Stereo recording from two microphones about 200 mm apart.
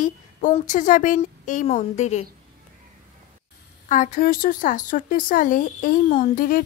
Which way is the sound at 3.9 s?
40° left (ahead or behind).